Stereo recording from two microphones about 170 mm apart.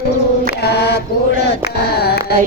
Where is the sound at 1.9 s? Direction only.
70° left (ahead or behind).